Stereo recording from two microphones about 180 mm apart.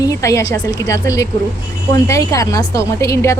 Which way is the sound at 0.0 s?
20° left (ahead or behind).